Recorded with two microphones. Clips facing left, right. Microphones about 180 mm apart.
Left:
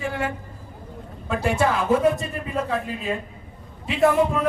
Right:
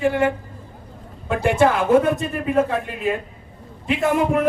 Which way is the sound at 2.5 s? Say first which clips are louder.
Right 6 dB; 60° right (ahead or behind).